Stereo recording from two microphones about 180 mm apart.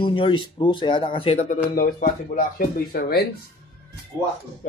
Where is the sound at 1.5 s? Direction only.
50° left (ahead or behind).